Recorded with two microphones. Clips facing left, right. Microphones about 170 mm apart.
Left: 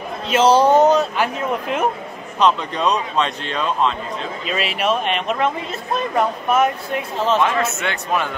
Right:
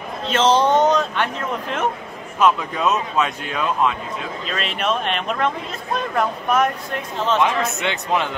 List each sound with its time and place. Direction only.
0.3 s speech: 10° left (ahead or behind)
2.4 s speech: 5° right (ahead or behind)
4.5 s speech: 5° left (ahead or behind)
7.4 s a man's voice: 15° right (ahead or behind)